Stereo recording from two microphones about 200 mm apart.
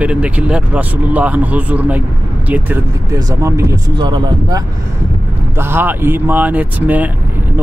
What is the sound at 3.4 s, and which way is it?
Speech, 15° right (ahead or behind).